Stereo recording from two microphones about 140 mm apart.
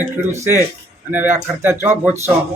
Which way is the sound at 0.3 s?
15° right (ahead or behind).